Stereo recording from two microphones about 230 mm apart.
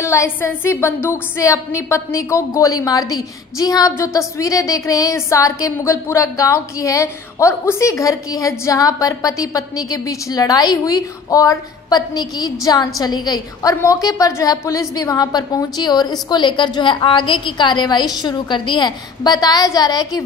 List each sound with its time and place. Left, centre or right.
0.0 s a woman's voice: centre